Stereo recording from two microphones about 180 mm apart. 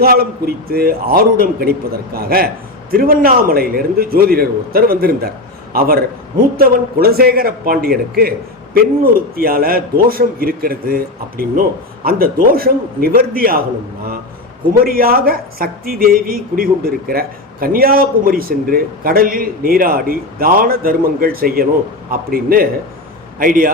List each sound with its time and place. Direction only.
0.0 s speech: 60° right (ahead or behind)
6.6 s speech: 60° right (ahead or behind)
14.8 s a man's voice: 55° right (ahead or behind)